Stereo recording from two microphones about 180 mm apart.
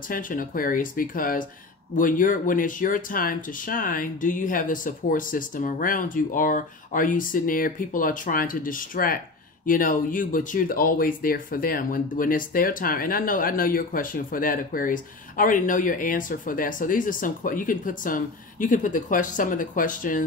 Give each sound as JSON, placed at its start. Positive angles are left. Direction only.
{"t": 0.1, "sound": "speech", "side_deg": 50}